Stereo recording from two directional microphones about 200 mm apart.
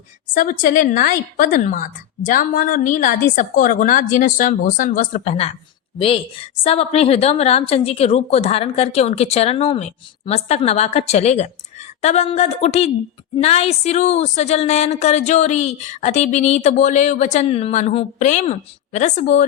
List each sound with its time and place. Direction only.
0.3 s a woman's voice: 40° left (ahead or behind)
6.6 s a woman's voice: 30° left (ahead or behind)